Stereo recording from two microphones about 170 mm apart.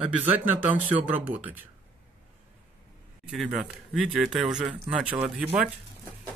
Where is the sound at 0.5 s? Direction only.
10° right (ahead or behind).